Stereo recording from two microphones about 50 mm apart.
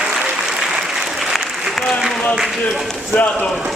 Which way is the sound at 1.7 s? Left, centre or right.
Centre.